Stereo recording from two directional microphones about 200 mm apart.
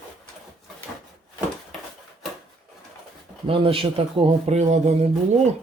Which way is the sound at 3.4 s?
25° right (ahead or behind).